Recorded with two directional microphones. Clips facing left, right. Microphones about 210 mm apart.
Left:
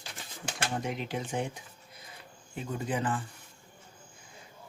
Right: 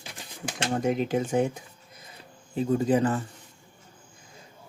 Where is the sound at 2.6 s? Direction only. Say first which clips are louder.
Right 10 dB; 35° right (ahead or behind).